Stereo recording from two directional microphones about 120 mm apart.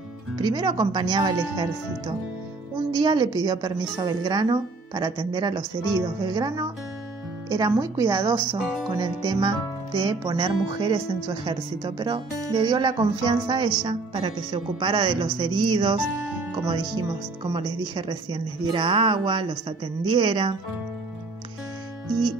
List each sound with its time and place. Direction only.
0.4 s a woman's voice: 40° right (ahead or behind)
3.0 s a woman's voice: 40° right (ahead or behind)